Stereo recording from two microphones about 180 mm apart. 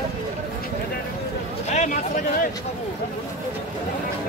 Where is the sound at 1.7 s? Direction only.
45° left (ahead or behind).